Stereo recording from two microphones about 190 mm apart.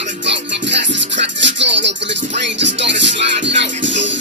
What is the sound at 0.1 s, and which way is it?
Music, 70° right (ahead or behind).